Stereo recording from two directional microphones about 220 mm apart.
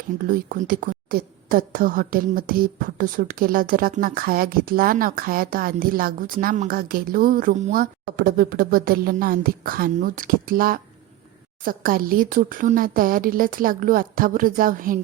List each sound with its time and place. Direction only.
0.3 s a woman's voice: 40° right (ahead or behind)